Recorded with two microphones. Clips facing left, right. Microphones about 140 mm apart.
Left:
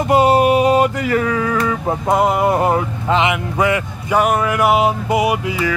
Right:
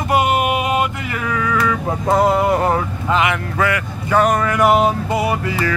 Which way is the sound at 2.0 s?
15° left (ahead or behind).